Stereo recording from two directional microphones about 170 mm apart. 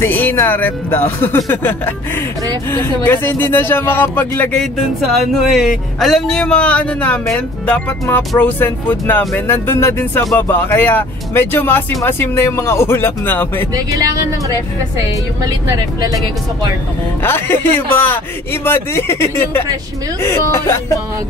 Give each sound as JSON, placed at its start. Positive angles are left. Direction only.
{"t": 0.0, "sound": "speech", "side_deg": 10}
{"t": 13.9, "sound": "speech", "side_deg": -20}
{"t": 17.2, "sound": "speech", "side_deg": 15}